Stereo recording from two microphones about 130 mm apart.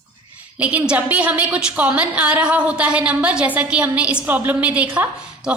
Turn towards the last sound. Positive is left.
turn(degrees=-10)  # may be behind; listen again after turning